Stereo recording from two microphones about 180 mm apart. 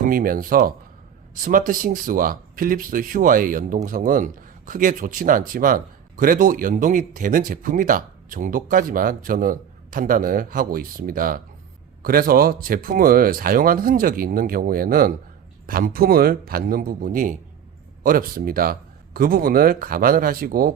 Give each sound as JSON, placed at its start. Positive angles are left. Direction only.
{"t": 0.0, "sound": "a man's voice", "side_deg": -50}